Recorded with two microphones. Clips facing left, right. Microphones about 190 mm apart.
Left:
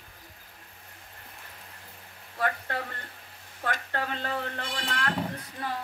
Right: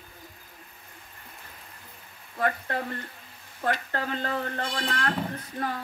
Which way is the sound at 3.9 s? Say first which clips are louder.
Right 2 dB; 45° right (ahead or behind).